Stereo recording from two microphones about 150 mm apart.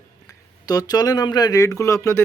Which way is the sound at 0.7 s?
25° left (ahead or behind).